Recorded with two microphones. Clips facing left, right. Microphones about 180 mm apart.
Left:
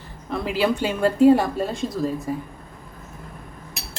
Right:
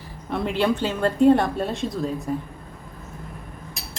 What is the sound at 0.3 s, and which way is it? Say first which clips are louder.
Speech: even; centre (ahead or behind).